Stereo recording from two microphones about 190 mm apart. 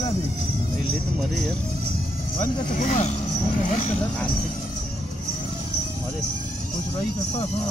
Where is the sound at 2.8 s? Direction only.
40° left (ahead or behind).